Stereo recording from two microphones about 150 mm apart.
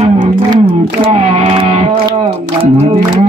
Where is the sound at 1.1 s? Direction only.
45° right (ahead or behind).